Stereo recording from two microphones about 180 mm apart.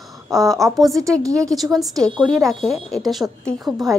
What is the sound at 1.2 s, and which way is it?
Speech, 20° right (ahead or behind).